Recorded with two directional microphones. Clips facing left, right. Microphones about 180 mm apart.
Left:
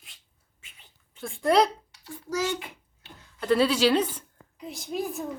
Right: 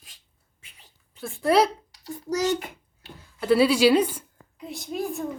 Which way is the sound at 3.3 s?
10° right (ahead or behind).